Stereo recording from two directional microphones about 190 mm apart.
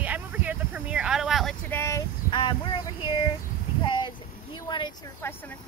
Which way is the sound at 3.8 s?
25° left (ahead or behind).